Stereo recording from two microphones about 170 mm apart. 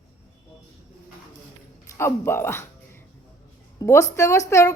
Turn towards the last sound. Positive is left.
turn(degrees=20)  # may be behind; listen again after turning